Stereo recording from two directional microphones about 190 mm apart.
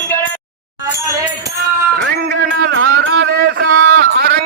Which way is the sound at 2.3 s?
60° right (ahead or behind).